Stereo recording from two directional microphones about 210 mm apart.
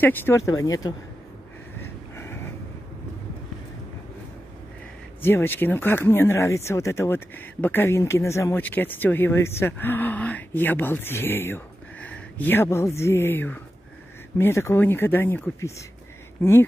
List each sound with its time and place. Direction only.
0.0 s speech: 10° left (ahead or behind)
1.8 s a sound: 10° left (ahead or behind)
5.2 s speech: 10° left (ahead or behind)